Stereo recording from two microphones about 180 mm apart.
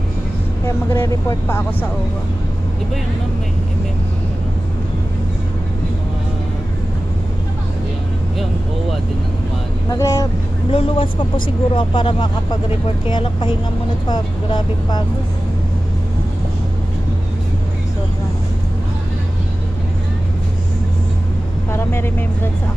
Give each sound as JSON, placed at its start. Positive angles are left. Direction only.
{"t": 0.9, "sound": "speech", "side_deg": 10}
{"t": 9.8, "sound": "speech", "side_deg": 15}
{"t": 10.7, "sound": "speech", "side_deg": 30}
{"t": 21.7, "sound": "speech", "side_deg": 15}